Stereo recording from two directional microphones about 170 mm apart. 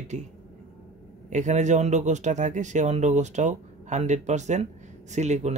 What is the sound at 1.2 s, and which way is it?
Speech, 45° right (ahead or behind).